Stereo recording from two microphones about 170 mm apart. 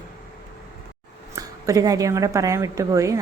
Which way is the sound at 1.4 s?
20° right (ahead or behind).